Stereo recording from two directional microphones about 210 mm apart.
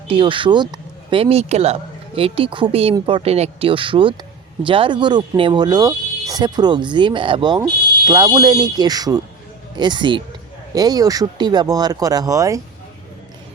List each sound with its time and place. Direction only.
0.1 s speech: 25° right (ahead or behind)